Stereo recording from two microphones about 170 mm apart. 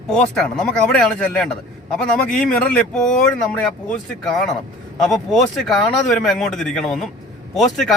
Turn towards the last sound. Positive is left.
turn(degrees=0)  # may be behind; listen again after turning